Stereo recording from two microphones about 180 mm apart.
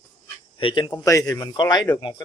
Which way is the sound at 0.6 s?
30° left (ahead or behind).